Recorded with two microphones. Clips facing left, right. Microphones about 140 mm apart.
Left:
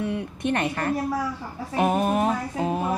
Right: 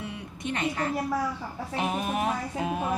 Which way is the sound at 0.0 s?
60° left (ahead or behind).